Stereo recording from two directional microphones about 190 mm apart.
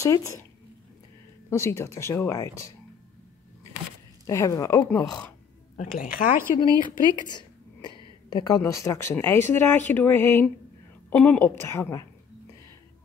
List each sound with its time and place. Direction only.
0.0 s speech: 15° left (ahead or behind)
1.5 s speech: 15° left (ahead or behind)
4.3 s speech: 15° left (ahead or behind)
5.9 s speech: 45° left (ahead or behind)
7.2 s a sound: 20° left (ahead or behind)
8.3 s speech: 20° left (ahead or behind)